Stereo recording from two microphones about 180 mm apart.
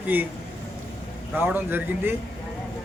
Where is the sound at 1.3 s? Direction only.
10° right (ahead or behind).